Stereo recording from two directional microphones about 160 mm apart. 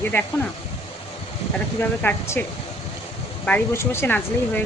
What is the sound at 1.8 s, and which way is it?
Speech, 10° left (ahead or behind).